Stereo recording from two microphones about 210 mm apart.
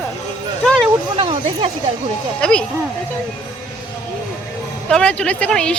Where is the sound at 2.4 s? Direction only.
5° left (ahead or behind).